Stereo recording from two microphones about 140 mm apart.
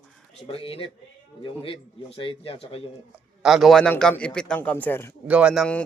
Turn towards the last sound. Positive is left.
turn(degrees=-10)  # may be behind; listen again after turning